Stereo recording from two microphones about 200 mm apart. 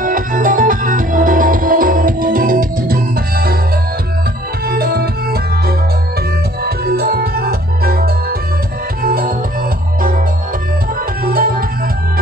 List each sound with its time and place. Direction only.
0.0 s music: 40° right (ahead or behind)
4.6 s music: 50° right (ahead or behind)
11.2 s music: 45° right (ahead or behind)